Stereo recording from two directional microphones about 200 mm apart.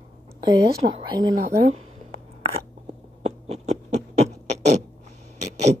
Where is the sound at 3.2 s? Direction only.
35° right (ahead or behind).